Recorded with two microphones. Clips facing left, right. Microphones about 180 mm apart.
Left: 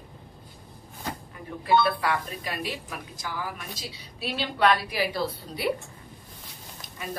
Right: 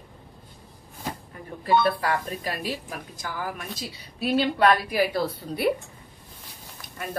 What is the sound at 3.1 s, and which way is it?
A woman's voice, 50° right (ahead or behind).